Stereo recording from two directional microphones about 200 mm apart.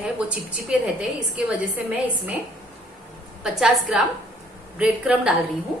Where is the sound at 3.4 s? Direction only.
5° right (ahead or behind).